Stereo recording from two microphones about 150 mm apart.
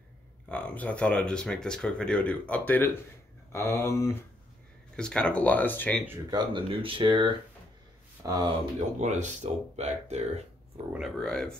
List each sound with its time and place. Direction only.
0.5 s speech: 10° left (ahead or behind)
4.9 s speech: 5° left (ahead or behind)
6.3 s speech: 35° right (ahead or behind)
9.0 s speech: 55° right (ahead or behind)
10.9 s speech: centre (ahead or behind)